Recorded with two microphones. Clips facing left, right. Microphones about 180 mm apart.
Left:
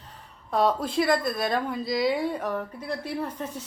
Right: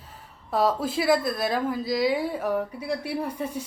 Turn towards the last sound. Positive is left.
turn(degrees=-10)  # may be behind; listen again after turning